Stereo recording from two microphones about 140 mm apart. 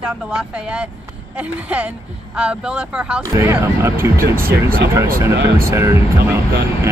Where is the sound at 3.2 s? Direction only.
20° right (ahead or behind).